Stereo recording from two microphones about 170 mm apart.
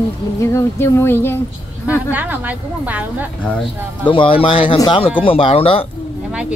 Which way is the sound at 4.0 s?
30° left (ahead or behind).